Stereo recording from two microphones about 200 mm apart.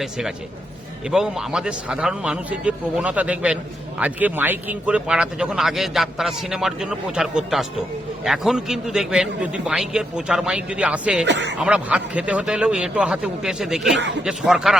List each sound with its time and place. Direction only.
0.0 s a man's voice: centre (ahead or behind)
11.3 s speech: 60° right (ahead or behind)
11.6 s a man's voice: 5° right (ahead or behind)